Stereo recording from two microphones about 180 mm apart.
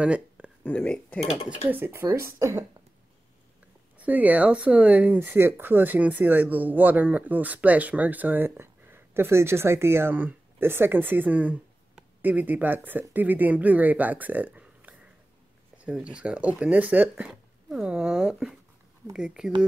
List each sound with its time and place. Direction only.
0.0 s a sound: 5° right (ahead or behind)
0.7 s speech: 5° left (ahead or behind)
1.7 s speech: 10° right (ahead or behind)
4.0 s speech: 10° right (ahead or behind)